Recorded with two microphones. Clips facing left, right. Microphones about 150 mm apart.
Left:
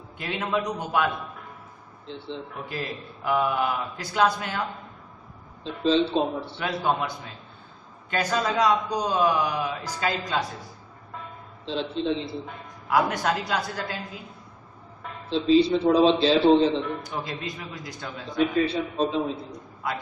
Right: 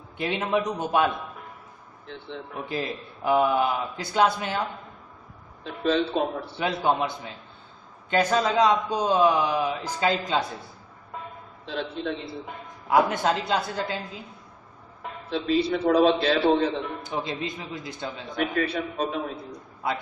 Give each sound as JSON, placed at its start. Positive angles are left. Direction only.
{"t": 0.2, "sound": "a man's voice", "side_deg": -20}
{"t": 2.7, "sound": "a man's voice", "side_deg": -20}
{"t": 5.6, "sound": "a man's voice", "side_deg": 30}
{"t": 6.6, "sound": "a man's voice", "side_deg": -20}
{"t": 11.6, "sound": "a man's voice", "side_deg": 30}
{"t": 12.9, "sound": "a man's voice", "side_deg": -25}
{"t": 15.5, "sound": "a man's voice", "side_deg": 25}
{"t": 17.0, "sound": "a man's voice", "side_deg": -20}
{"t": 18.3, "sound": "a man's voice", "side_deg": 25}